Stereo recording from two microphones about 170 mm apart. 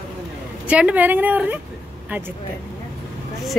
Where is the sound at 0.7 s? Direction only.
5° right (ahead or behind).